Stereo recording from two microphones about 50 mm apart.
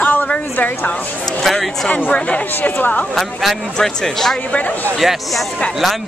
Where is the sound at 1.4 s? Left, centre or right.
Centre.